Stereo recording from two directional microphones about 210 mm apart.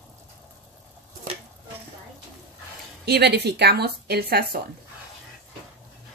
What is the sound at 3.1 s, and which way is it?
A woman's voice, 50° right (ahead or behind).